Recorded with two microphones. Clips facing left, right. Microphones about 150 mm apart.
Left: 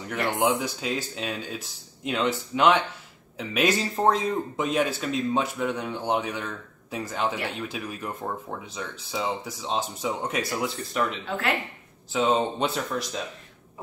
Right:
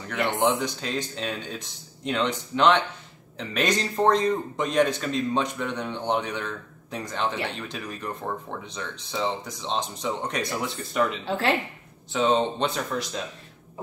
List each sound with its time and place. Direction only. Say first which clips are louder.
0.4 s a man's voice: even; 10° left (ahead or behind)
11.2 s speech: right 3 dB; 30° right (ahead or behind)
12.1 s a man's voice: right 1 dB; 5° left (ahead or behind)